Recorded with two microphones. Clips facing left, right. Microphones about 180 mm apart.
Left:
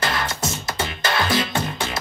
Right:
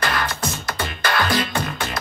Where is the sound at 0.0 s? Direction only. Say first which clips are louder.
Right 1 dB; 25° left (ahead or behind).